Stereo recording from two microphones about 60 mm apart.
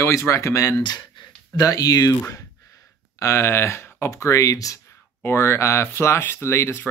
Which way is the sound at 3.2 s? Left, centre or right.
Left.